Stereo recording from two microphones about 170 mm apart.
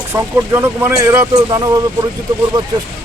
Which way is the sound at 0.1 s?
15° right (ahead or behind).